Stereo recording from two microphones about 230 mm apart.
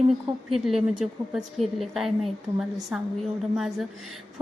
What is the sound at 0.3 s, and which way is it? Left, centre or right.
A woman's voice, centre.